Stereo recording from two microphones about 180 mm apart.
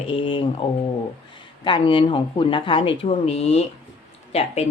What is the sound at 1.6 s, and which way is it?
Speech, 25° left (ahead or behind).